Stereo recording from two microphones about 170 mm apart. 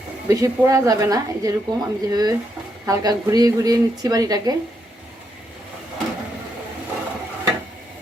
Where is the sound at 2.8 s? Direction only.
20° right (ahead or behind).